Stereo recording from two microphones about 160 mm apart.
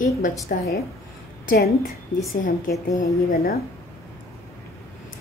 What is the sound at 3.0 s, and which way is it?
Speech, 65° left (ahead or behind).